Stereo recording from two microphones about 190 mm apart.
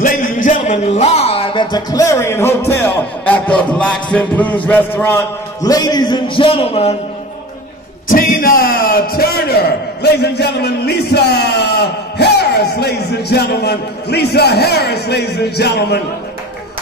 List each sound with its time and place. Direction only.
0.0 s speech: 40° left (ahead or behind)
8.1 s a man's voice: 50° left (ahead or behind)